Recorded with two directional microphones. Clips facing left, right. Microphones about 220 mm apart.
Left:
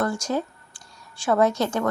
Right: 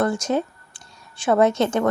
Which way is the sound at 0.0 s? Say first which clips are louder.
Right 4 dB; 20° right (ahead or behind).